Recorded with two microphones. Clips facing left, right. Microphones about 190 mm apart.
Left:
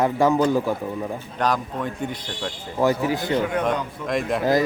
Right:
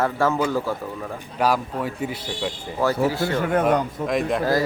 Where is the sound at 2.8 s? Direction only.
20° left (ahead or behind).